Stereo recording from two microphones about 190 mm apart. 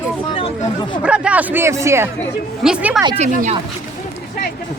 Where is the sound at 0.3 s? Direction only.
30° left (ahead or behind).